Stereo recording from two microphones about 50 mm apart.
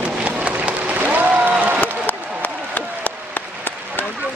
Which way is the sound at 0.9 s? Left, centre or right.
Right.